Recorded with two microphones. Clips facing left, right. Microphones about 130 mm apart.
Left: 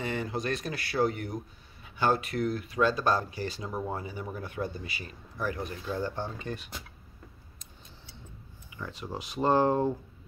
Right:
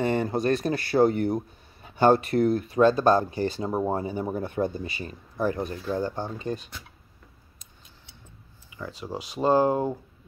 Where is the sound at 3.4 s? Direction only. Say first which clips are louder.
Right 8 dB; 30° right (ahead or behind).